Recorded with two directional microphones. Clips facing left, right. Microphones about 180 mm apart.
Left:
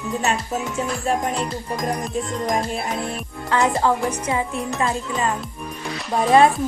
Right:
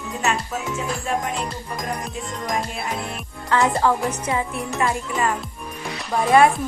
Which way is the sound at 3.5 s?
15° left (ahead or behind).